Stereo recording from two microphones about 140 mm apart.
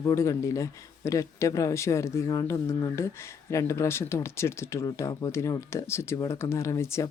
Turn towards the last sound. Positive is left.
turn(degrees=20)  # may be behind; listen again after turning